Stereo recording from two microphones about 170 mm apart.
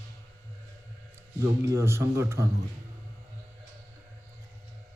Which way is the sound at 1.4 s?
15° right (ahead or behind).